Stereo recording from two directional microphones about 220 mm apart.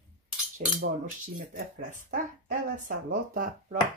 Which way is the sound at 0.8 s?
35° right (ahead or behind).